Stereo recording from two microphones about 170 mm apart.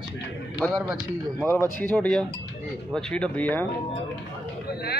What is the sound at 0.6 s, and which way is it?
Speech, centre (ahead or behind).